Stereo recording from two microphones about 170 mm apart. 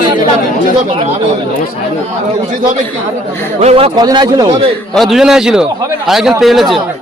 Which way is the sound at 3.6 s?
40° right (ahead or behind).